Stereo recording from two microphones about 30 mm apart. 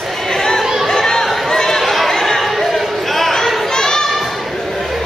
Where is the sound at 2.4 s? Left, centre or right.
Centre.